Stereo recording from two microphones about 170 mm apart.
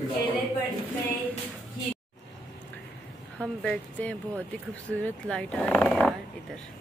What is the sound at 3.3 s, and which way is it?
Speech, 5° left (ahead or behind).